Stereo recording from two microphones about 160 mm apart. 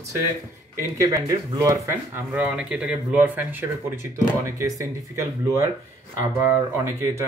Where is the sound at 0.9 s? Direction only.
20° right (ahead or behind).